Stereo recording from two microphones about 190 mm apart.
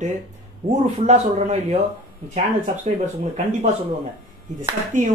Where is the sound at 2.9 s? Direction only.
35° right (ahead or behind).